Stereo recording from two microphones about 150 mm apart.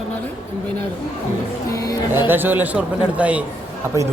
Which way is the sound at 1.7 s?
25° left (ahead or behind).